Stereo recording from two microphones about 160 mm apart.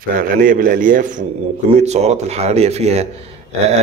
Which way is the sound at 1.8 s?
45° right (ahead or behind).